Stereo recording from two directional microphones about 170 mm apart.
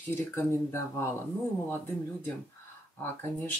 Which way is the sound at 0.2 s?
15° left (ahead or behind).